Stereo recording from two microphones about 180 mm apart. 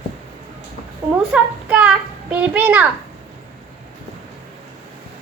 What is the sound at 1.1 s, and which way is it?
Child singing, 5° right (ahead or behind).